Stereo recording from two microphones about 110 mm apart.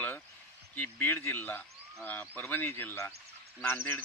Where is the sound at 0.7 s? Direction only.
20° left (ahead or behind).